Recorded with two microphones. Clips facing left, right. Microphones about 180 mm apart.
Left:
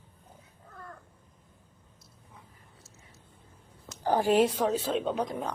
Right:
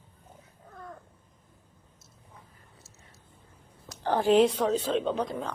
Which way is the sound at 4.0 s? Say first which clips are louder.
Right 2 dB; 10° left (ahead or behind).